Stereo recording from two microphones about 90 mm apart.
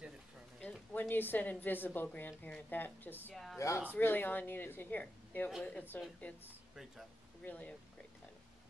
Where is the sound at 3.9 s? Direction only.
20° left (ahead or behind).